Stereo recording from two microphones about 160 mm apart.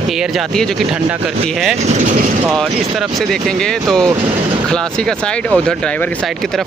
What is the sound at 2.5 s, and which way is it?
Speech, centre (ahead or behind).